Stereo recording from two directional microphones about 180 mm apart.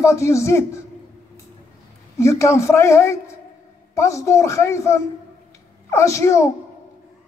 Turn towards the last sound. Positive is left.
turn(degrees=15)  # may be behind; listen again after turning